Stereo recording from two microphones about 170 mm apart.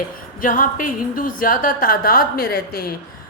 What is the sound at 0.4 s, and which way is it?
A woman's voice, 55° left (ahead or behind).